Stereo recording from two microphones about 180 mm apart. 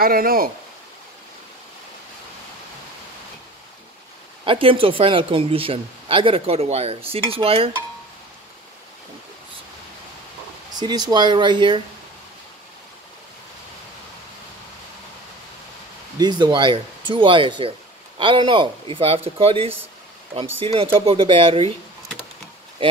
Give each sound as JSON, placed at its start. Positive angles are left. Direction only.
{"t": 0.0, "sound": "speech", "side_deg": -55}
{"t": 4.5, "sound": "speech", "side_deg": -30}
{"t": 10.7, "sound": "speech", "side_deg": -20}
{"t": 16.2, "sound": "speech", "side_deg": -25}